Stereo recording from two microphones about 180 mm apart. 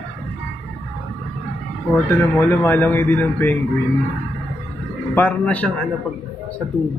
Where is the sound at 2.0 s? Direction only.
10° left (ahead or behind).